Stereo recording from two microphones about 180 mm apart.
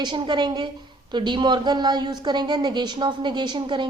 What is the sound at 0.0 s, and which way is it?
A woman's voice, 25° right (ahead or behind).